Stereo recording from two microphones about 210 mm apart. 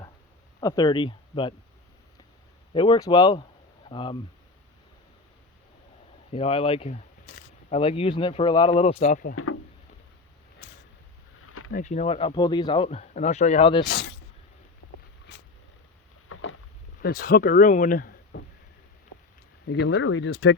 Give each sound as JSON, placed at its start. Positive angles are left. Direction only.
{"t": 0.6, "sound": "speech", "side_deg": 15}
{"t": 2.7, "sound": "speech", "side_deg": 20}
{"t": 6.3, "sound": "speech", "side_deg": 25}
{"t": 9.3, "sound": "speech", "side_deg": 90}
{"t": 11.4, "sound": "a sound", "side_deg": 90}
{"t": 11.7, "sound": "speech", "side_deg": 35}
{"t": 16.3, "sound": "boat", "side_deg": 65}
{"t": 17.0, "sound": "speech", "side_deg": 45}
{"t": 18.3, "sound": "a sound", "side_deg": 60}
{"t": 19.7, "sound": "speech", "side_deg": 55}